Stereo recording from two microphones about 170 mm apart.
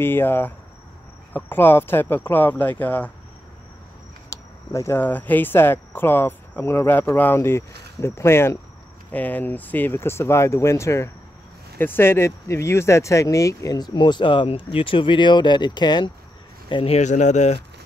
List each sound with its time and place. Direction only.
0.0 s speech: 10° left (ahead or behind)
4.3 s speech: 15° left (ahead or behind); by 17.6 s 45° left (ahead or behind)